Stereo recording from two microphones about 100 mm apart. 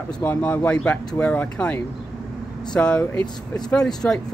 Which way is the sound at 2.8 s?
10° left (ahead or behind).